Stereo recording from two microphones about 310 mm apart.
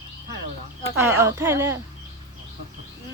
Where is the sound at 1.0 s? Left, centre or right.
Centre.